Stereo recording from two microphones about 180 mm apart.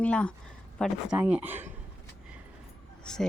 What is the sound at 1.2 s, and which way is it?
Speech, 10° right (ahead or behind).